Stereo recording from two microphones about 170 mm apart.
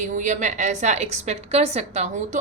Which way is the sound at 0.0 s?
45° right (ahead or behind).